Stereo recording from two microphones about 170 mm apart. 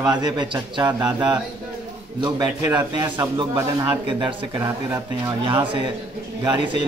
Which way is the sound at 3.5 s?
15° right (ahead or behind).